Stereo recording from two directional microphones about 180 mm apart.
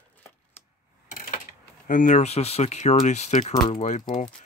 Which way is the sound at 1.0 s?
45° left (ahead or behind).